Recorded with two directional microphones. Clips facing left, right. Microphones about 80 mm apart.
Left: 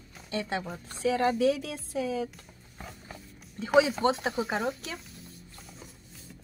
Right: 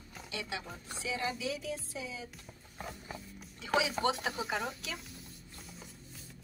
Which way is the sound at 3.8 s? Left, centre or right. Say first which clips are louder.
Left 9 dB; left.